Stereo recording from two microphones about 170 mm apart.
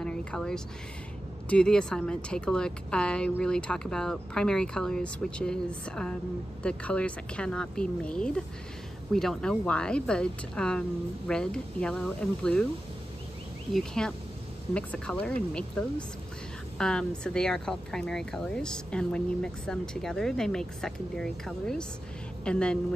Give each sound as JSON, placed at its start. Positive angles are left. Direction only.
{"t": 0.0, "sound": "a sound", "side_deg": 5}
{"t": 1.5, "sound": "speech", "side_deg": 5}
{"t": 13.7, "sound": "speech", "side_deg": 5}
{"t": 16.7, "sound": "a woman's voice", "side_deg": 5}